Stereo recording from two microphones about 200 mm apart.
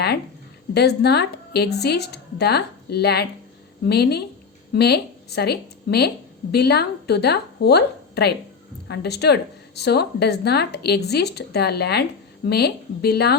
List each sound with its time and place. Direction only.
0.7 s a woman's voice: 55° left (ahead or behind)